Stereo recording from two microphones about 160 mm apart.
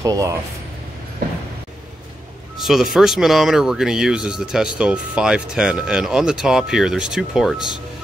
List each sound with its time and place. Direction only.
0.0 s speech: 20° right (ahead or behind)
2.5 s speech: centre (ahead or behind)